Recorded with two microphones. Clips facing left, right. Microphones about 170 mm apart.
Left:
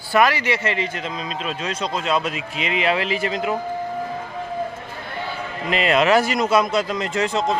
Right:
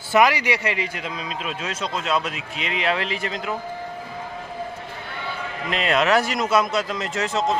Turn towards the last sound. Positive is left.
turn(degrees=0)  # may be behind; listen again after turning